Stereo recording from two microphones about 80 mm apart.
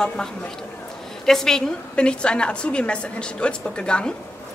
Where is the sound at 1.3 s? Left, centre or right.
Centre.